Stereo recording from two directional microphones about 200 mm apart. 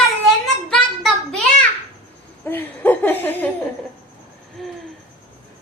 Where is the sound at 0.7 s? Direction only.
5° left (ahead or behind).